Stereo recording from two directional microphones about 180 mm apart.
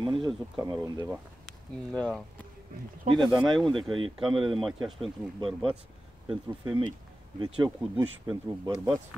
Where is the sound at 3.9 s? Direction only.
30° right (ahead or behind).